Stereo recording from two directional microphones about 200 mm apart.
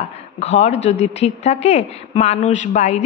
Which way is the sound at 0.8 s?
35° left (ahead or behind).